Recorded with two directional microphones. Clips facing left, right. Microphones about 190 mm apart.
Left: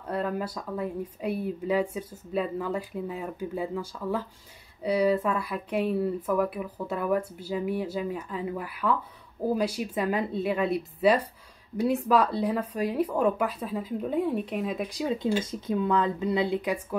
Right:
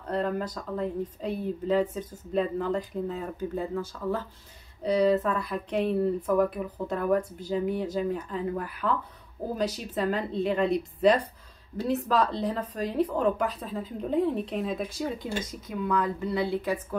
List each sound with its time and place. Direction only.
0.1 s speech: 10° left (ahead or behind)
15.2 s speech: 30° left (ahead or behind)